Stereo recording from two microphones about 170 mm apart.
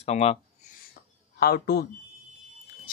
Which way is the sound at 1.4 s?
65° left (ahead or behind).